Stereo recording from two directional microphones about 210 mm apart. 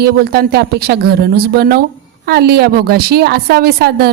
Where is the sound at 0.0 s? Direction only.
50° right (ahead or behind).